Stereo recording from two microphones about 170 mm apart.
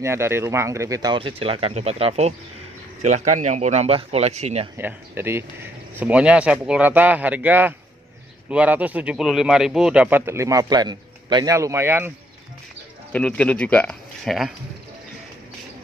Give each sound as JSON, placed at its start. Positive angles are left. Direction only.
{"t": 0.0, "sound": "speech", "side_deg": -15}
{"t": 4.7, "sound": "speech", "side_deg": -15}
{"t": 13.1, "sound": "speech", "side_deg": 5}